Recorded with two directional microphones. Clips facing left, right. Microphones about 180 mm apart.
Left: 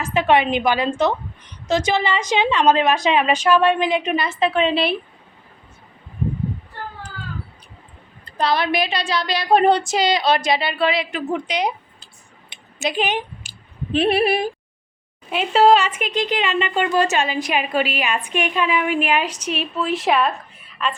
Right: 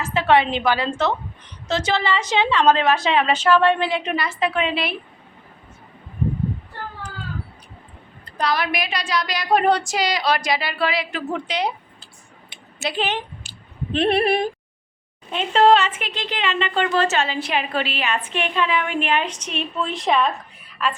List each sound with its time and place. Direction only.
0.0 s a woman's voice: 15° left (ahead or behind)
8.2 s speech: 25° left (ahead or behind)
12.5 s a sound: 15° left (ahead or behind)
15.3 s a woman's voice: 10° left (ahead or behind)